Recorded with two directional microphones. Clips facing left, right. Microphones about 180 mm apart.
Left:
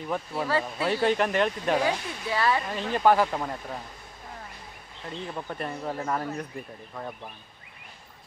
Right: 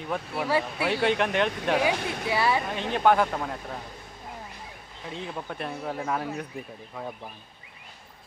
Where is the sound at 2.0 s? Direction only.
75° right (ahead or behind).